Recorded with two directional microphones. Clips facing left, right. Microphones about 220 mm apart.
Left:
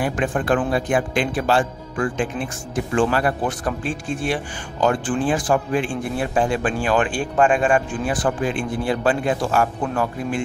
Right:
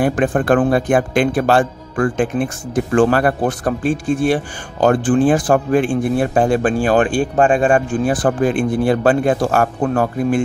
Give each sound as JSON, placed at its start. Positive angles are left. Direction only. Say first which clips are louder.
{"t": 0.0, "sound": "speech", "louder": "right 6 dB", "side_deg": -50}